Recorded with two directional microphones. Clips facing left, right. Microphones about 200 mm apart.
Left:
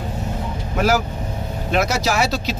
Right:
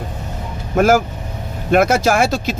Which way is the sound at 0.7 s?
50° right (ahead or behind).